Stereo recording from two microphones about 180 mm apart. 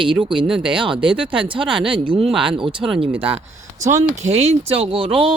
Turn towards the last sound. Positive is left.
turn(degrees=-30)  # may be behind; listen again after turning